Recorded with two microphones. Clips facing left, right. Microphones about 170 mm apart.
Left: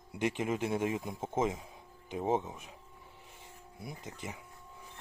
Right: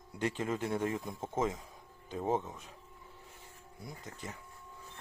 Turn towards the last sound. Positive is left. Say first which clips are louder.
# left 2 dB
turn(degrees=15)  # may be behind; listen again after turning